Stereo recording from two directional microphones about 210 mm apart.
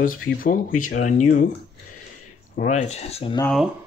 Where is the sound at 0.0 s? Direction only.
40° left (ahead or behind).